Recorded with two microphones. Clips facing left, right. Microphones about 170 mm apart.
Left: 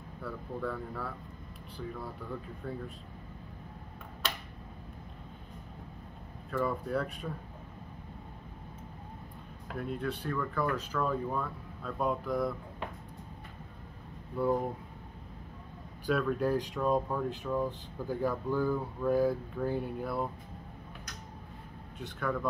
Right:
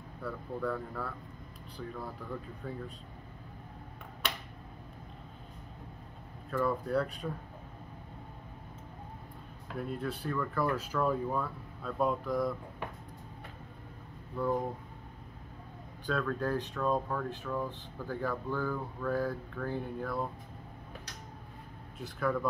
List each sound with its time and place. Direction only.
0.2 s speech: centre (ahead or behind)
6.5 s speech: centre (ahead or behind)
9.8 s speech: centre (ahead or behind)
14.4 s speech: 10° left (ahead or behind)
16.1 s speech: 10° left (ahead or behind)
21.9 s speech: centre (ahead or behind)